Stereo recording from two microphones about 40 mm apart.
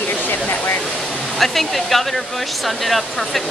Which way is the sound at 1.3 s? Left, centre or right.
Centre.